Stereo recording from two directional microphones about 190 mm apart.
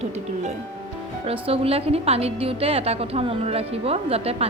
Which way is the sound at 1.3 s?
30° right (ahead or behind).